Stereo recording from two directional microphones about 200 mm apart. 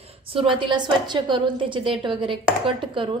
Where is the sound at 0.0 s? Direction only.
30° right (ahead or behind).